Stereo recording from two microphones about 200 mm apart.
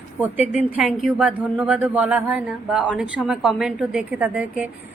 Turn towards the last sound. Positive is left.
turn(degrees=-5)  # may be behind; listen again after turning